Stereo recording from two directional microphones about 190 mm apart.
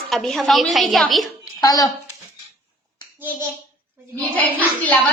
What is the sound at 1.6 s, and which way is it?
Speech, 20° left (ahead or behind).